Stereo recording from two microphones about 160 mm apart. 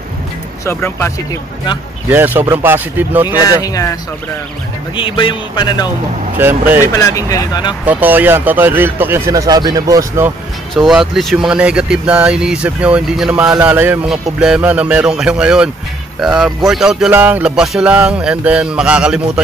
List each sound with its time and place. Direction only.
0.7 s speech: 15° left (ahead or behind)
2.0 s speech: 10° right (ahead or behind)
3.4 s speech: 20° left (ahead or behind)
4.9 s speech: 30° left (ahead or behind)
6.3 s speech: 10° right (ahead or behind)
7.0 s speech: 20° left (ahead or behind)
7.8 s speech: 10° right (ahead or behind)
10.7 s speech: centre (ahead or behind)